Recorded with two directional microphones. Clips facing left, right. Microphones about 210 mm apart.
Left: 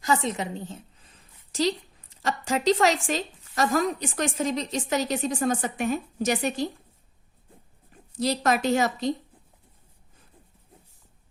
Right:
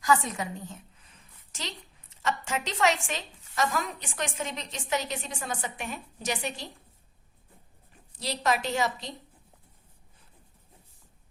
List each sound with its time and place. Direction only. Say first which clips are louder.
0.0 s a sound: left 1 dB; 25° left (ahead or behind)
2.2 s a woman's voice: left 8 dB; 35° left (ahead or behind)
8.2 s speech: left 5 dB; 45° left (ahead or behind)